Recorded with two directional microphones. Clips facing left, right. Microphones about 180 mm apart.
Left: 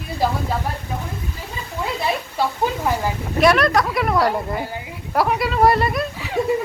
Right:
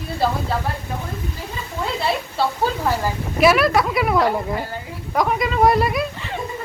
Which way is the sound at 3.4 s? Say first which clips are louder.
Even; 5° right (ahead or behind).